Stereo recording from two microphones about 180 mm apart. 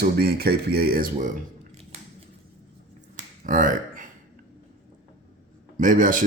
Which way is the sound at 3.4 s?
45° right (ahead or behind).